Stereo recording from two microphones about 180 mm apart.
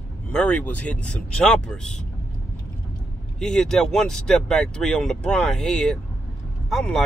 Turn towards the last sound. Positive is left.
turn(degrees=5)  # may be behind; listen again after turning